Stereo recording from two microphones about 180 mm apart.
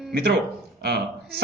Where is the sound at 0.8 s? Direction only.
60° right (ahead or behind).